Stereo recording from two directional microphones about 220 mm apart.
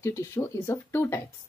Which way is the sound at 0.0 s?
10° left (ahead or behind).